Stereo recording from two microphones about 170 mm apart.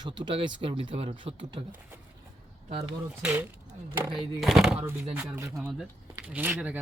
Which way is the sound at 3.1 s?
5° right (ahead or behind).